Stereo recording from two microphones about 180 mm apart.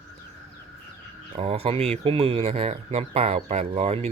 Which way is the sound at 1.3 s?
35° right (ahead or behind).